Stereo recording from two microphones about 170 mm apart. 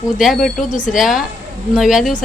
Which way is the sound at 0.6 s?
50° left (ahead or behind).